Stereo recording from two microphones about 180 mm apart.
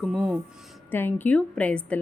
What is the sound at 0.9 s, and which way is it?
A woman's voice, 10° left (ahead or behind).